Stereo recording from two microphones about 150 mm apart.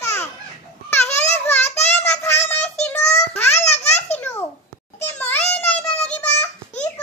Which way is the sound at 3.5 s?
45° left (ahead or behind).